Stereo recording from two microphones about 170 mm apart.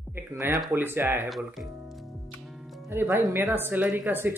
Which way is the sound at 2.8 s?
15° right (ahead or behind).